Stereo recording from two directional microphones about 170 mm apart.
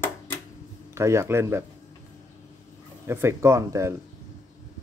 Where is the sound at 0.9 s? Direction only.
15° right (ahead or behind).